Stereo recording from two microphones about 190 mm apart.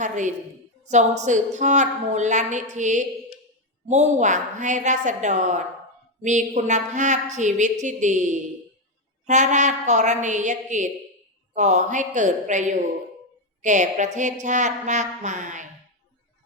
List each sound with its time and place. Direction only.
0.9 s a woman's voice: 40° right (ahead or behind)